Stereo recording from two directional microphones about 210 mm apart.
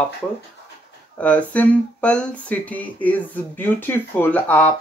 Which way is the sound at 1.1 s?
5° left (ahead or behind).